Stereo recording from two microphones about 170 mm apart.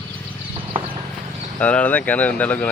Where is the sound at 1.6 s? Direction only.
10° left (ahead or behind).